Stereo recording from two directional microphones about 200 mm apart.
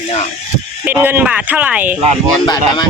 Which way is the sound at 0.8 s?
10° right (ahead or behind).